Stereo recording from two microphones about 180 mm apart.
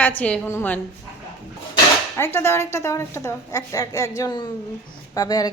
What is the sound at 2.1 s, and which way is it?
A woman's voice, 15° left (ahead or behind).